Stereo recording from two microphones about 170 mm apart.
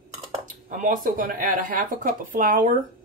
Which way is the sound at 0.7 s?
50° right (ahead or behind).